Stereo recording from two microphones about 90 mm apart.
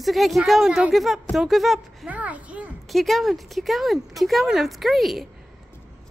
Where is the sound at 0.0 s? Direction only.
Centre (ahead or behind).